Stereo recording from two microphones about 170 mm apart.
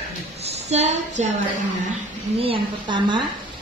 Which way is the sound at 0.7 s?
40° right (ahead or behind).